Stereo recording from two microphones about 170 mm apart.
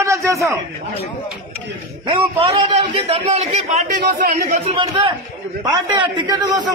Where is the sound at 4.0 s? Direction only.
60° right (ahead or behind).